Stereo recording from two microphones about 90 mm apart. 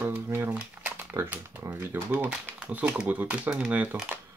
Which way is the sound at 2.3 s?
15° right (ahead or behind).